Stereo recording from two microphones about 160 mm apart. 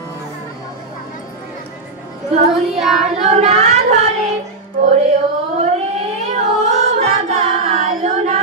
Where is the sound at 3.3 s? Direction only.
40° right (ahead or behind).